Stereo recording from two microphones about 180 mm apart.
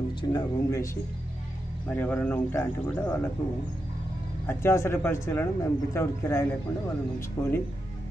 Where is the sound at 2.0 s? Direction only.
10° left (ahead or behind).